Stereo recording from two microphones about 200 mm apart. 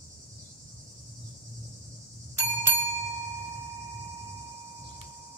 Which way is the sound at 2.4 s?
10° right (ahead or behind).